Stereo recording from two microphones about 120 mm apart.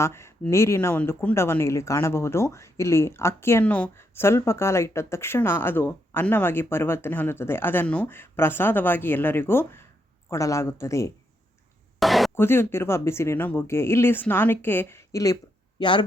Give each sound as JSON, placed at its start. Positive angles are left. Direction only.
{"t": 0.0, "sound": "speech", "side_deg": 20}
{"t": 11.9, "sound": "a sound", "side_deg": 0}
{"t": 12.3, "sound": "speech", "side_deg": 20}
{"t": 15.8, "sound": "speech", "side_deg": 40}